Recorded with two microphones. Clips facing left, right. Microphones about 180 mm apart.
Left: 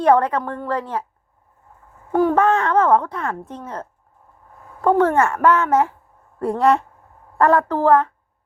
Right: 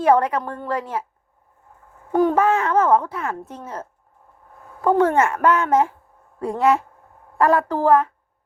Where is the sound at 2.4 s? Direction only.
5° right (ahead or behind).